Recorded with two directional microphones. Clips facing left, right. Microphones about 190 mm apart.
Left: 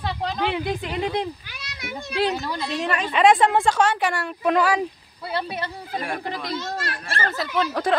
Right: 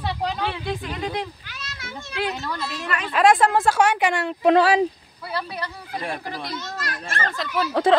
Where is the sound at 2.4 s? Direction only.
15° left (ahead or behind).